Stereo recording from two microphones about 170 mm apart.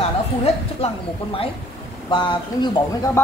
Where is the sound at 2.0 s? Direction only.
30° left (ahead or behind).